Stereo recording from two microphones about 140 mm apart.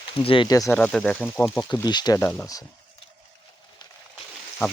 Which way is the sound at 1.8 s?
30° left (ahead or behind).